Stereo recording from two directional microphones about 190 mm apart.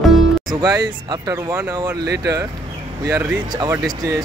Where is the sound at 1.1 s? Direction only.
15° right (ahead or behind).